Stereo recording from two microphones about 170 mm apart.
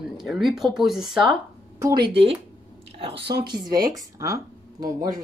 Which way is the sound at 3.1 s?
75° right (ahead or behind).